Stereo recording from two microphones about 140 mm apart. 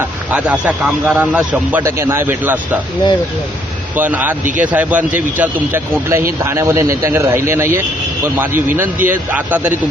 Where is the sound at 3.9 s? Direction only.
10° right (ahead or behind).